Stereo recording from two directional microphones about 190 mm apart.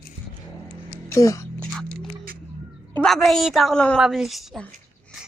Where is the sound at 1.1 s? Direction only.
15° left (ahead or behind).